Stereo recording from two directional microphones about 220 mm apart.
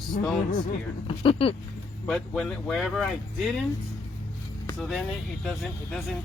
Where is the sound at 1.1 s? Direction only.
25° left (ahead or behind).